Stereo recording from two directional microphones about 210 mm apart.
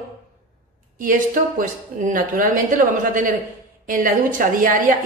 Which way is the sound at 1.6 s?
40° right (ahead or behind).